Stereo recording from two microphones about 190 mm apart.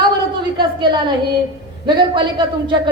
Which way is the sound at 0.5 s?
25° right (ahead or behind).